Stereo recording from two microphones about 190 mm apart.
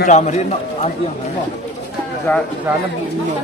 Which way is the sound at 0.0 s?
35° left (ahead or behind).